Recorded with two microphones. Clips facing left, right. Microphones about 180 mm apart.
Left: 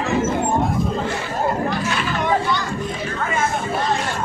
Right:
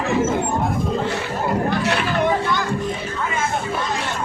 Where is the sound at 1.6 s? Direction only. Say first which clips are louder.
Right 2 dB; 65° right (ahead or behind).